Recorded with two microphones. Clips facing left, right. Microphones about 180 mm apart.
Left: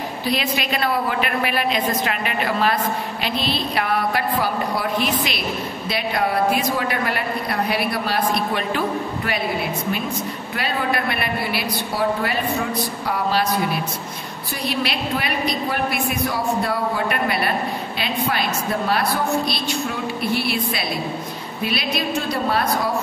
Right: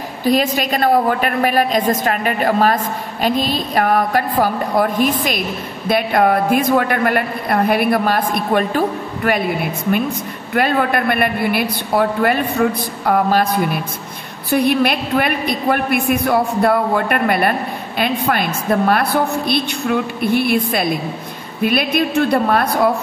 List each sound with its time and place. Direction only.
0.2 s a man's voice: 45° right (ahead or behind)
10.5 s a man's voice: 55° right (ahead or behind)